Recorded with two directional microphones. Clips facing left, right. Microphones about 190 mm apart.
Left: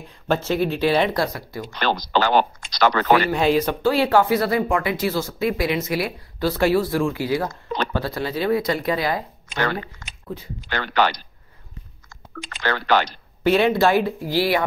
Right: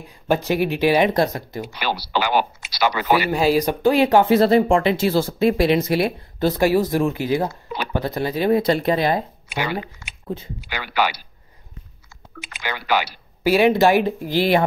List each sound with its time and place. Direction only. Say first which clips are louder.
0.0 s speech: right 2 dB; 15° right (ahead or behind)
1.7 s speech: left 4 dB; 10° right (ahead or behind)
7.4 s speech: left 1 dB; 10° right (ahead or behind); by 9.2 s 25° right (ahead or behind)
9.5 s speech: left 1 dB; 10° right (ahead or behind)